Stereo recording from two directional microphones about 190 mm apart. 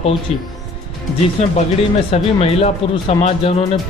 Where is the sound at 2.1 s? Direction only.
30° left (ahead or behind).